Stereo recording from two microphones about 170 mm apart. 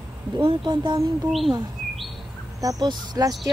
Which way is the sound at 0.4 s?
30° right (ahead or behind).